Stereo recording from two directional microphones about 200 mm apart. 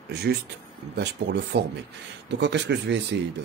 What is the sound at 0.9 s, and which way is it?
A man's voice, 55° right (ahead or behind).